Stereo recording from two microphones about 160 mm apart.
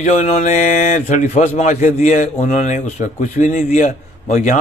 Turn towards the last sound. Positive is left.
turn(degrees=50)  # may be behind; listen again after turning